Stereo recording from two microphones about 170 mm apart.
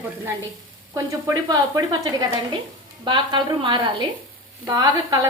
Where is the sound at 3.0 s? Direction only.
30° right (ahead or behind).